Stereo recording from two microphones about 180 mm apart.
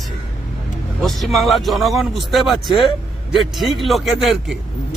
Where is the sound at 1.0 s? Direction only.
Centre (ahead or behind).